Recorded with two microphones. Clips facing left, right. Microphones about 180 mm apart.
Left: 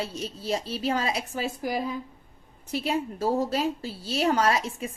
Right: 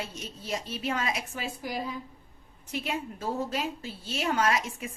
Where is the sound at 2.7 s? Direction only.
35° left (ahead or behind).